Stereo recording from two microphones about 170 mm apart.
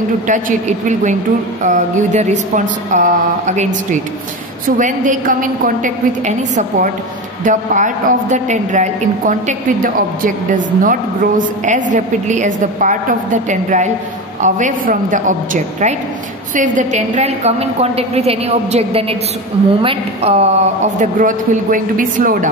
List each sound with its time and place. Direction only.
0.3 s a woman's voice: 45° right (ahead or behind)